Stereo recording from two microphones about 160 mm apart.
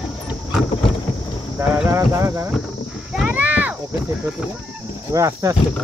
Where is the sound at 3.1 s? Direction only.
5° right (ahead or behind).